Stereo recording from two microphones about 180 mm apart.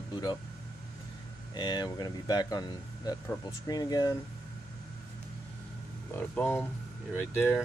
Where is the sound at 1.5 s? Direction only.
25° left (ahead or behind).